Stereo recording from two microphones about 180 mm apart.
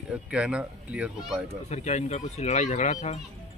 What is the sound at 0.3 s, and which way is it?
Speech, 5° right (ahead or behind).